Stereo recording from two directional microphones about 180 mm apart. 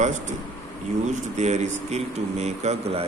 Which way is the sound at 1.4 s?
40° right (ahead or behind).